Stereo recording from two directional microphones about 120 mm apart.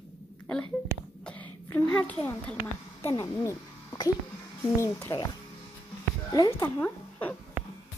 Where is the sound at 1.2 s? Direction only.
10° left (ahead or behind).